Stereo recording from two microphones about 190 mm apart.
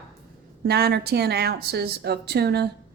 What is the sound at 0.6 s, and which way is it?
A woman's voice, 55° right (ahead or behind).